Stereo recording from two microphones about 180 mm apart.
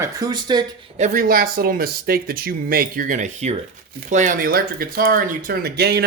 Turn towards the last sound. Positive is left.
turn(degrees=-60)  # may be behind; listen again after turning